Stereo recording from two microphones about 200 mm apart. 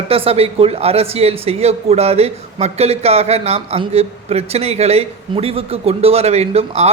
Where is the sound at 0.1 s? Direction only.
30° right (ahead or behind).